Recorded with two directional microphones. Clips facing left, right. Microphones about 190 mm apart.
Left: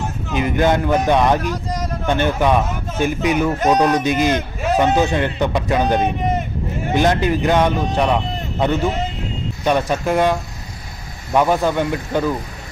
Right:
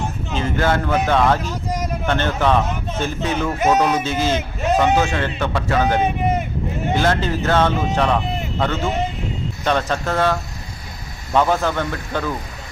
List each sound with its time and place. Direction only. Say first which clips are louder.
0.3 s speech: left 3 dB; 15° left (ahead or behind)
1.7 s a sound: even; 10° right (ahead or behind)
2.0 s speech: left 2 dB; 15° left (ahead or behind)
3.5 s speech: left 2 dB; 5° right (ahead or behind)
4.0 s speech: left 3 dB; 15° left (ahead or behind)